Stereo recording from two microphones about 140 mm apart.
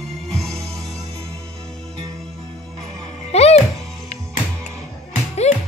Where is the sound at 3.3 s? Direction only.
50° left (ahead or behind).